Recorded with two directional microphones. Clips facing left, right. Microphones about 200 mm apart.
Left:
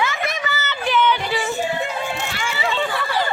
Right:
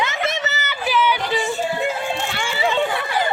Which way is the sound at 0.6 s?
5° right (ahead or behind).